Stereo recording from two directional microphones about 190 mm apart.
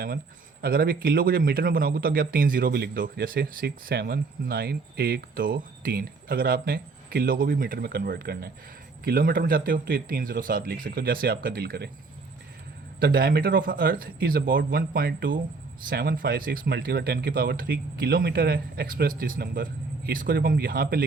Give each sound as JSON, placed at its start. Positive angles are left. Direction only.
{"t": 0.6, "sound": "a man's voice", "side_deg": -50}
{"t": 13.0, "sound": "a man's voice", "side_deg": -50}